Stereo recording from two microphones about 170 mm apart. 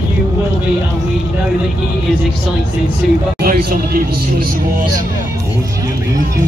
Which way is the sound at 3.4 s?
65° right (ahead or behind).